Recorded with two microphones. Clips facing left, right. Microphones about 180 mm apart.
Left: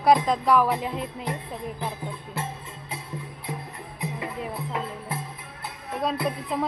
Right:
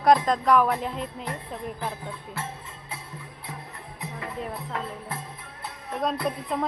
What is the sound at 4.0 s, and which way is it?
Music, 10° left (ahead or behind).